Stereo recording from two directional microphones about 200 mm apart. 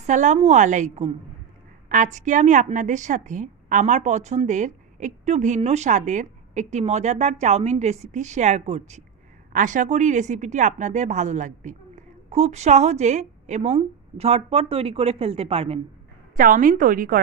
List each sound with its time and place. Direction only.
0.0 s a woman's voice: 35° right (ahead or behind)
16.3 s a woman's voice: 45° right (ahead or behind)